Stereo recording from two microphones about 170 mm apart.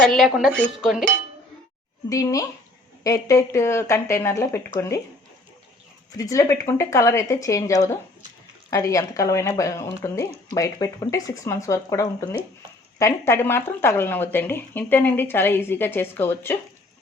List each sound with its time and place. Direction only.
0.0 s cutlery: centre (ahead or behind)
2.0 s a woman's voice: 20° left (ahead or behind)
6.1 s a woman's voice: 20° left (ahead or behind)